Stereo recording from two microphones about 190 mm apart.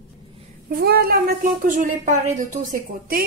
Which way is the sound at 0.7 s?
55° right (ahead or behind).